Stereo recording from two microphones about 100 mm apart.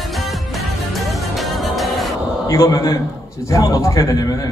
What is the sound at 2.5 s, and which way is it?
A man's voice, 35° left (ahead or behind).